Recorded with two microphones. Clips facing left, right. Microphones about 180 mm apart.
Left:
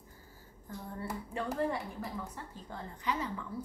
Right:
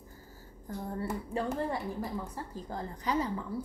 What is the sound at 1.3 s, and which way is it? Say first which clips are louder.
A woman's voice: even; 35° right (ahead or behind).